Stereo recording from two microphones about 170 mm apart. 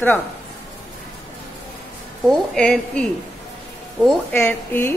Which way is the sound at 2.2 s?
5° left (ahead or behind).